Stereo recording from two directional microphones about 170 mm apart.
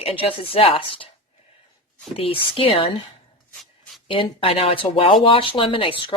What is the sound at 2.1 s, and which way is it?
Speech, 30° left (ahead or behind).